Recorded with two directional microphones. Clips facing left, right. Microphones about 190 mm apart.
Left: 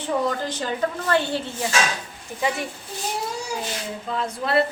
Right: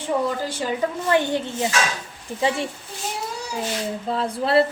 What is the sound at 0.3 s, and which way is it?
A woman's voice, 10° right (ahead or behind).